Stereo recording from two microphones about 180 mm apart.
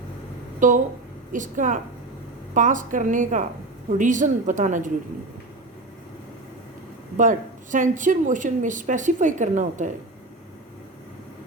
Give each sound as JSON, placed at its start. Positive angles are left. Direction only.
{"t": 0.6, "sound": "a woman's voice", "side_deg": -45}
{"t": 7.2, "sound": "a woman's voice", "side_deg": -45}